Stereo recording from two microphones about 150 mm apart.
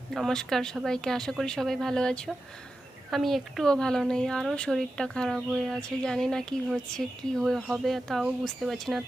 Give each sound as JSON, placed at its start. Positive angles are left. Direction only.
{"t": 0.1, "sound": "speech", "side_deg": 0}